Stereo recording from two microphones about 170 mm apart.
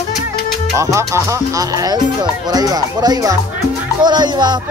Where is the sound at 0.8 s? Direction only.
15° right (ahead or behind).